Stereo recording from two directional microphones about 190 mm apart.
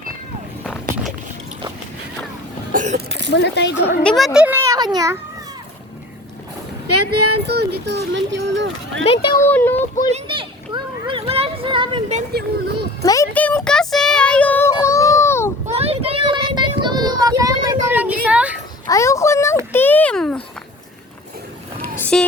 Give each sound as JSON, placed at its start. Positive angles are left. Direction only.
{"t": 2.7, "sound": "speech", "side_deg": -40}
{"t": 3.2, "sound": "speech", "side_deg": 70}
{"t": 4.0, "sound": "a child's voice", "side_deg": 0}
{"t": 7.0, "sound": "speech", "side_deg": -60}
{"t": 9.5, "sound": "speech", "side_deg": 10}
{"t": 10.1, "sound": "children playing", "side_deg": -30}
{"t": 12.3, "sound": "speech", "side_deg": -55}
{"t": 13.0, "sound": "speech", "side_deg": 15}
{"t": 13.7, "sound": "child singing", "side_deg": 5}
{"t": 15.6, "sound": "a sound", "side_deg": -35}
{"t": 17.9, "sound": "a sound", "side_deg": -5}
{"t": 18.9, "sound": "a sound", "side_deg": 15}
{"t": 21.8, "sound": "vehicle", "side_deg": 10}